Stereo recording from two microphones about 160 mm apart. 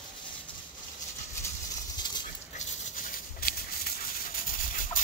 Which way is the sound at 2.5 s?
60° left (ahead or behind).